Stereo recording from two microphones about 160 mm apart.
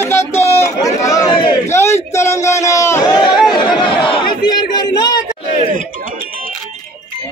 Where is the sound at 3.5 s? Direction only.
30° left (ahead or behind).